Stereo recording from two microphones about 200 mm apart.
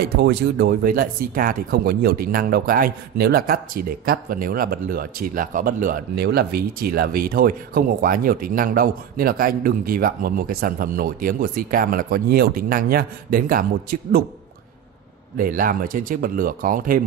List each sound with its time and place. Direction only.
0.0 s speech: 55° right (ahead or behind)
15.3 s speech: 45° right (ahead or behind)